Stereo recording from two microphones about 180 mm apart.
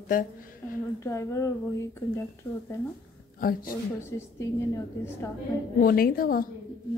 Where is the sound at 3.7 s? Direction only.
15° left (ahead or behind).